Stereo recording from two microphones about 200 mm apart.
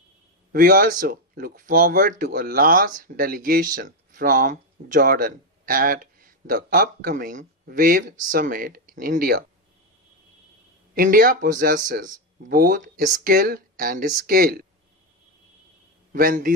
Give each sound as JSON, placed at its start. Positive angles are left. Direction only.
{"t": 0.5, "sound": "speech", "side_deg": -45}
{"t": 10.9, "sound": "speech", "side_deg": -45}
{"t": 16.1, "sound": "speech", "side_deg": -45}